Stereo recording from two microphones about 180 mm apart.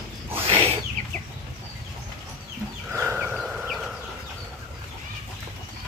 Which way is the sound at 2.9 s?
10° right (ahead or behind).